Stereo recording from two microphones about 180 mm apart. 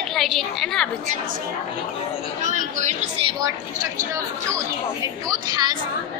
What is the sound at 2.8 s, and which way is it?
Speech, 40° right (ahead or behind).